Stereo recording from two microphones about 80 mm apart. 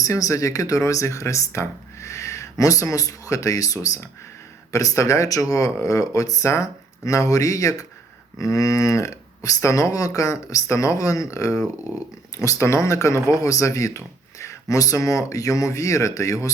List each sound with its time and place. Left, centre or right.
0.0 s speech: left